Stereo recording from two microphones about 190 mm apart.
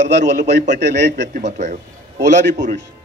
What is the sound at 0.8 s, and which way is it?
Speech, 65° right (ahead or behind).